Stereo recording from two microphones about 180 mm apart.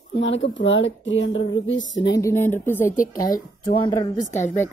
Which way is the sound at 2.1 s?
15° left (ahead or behind).